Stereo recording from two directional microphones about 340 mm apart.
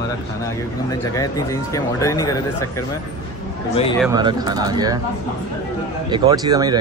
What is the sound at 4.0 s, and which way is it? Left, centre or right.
Speech, centre.